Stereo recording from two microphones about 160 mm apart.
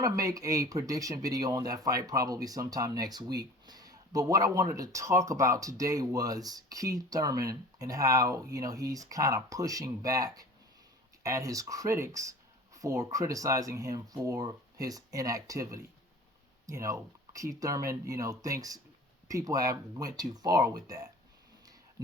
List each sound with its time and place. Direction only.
0.0 s speech: 20° right (ahead or behind)